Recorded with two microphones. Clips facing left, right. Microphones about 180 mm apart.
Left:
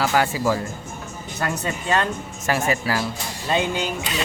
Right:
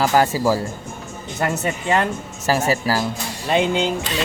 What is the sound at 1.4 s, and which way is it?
Speech, 20° right (ahead or behind).